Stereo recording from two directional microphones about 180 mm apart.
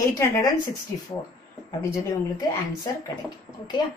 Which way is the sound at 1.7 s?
20° left (ahead or behind).